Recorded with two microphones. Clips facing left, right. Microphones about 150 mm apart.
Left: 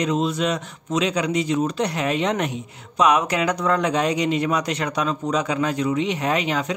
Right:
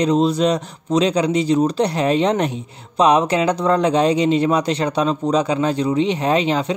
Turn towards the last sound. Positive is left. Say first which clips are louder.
# right 5 dB
turn(degrees=-30)  # may be behind; listen again after turning